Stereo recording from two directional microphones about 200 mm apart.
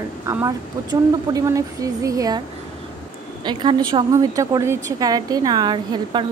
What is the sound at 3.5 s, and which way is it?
A woman's voice, 20° right (ahead or behind).